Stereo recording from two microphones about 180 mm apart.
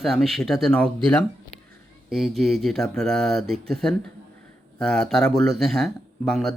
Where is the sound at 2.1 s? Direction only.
Centre (ahead or behind).